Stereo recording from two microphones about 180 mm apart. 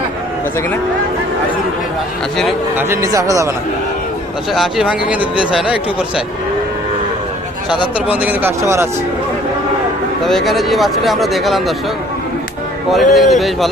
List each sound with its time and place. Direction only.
2.7 s speech: 15° right (ahead or behind)
4.5 s speech: centre (ahead or behind)
7.9 s speech: 5° right (ahead or behind)
10.2 s speech: centre (ahead or behind)
12.9 s speech: centre (ahead or behind)